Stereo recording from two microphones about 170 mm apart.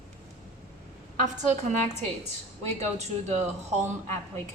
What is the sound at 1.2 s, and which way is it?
A woman's voice, 45° right (ahead or behind).